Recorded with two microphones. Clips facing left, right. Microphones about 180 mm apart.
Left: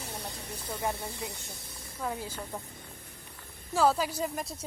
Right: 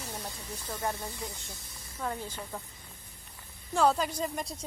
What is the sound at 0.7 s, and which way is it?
Speech, 5° left (ahead or behind).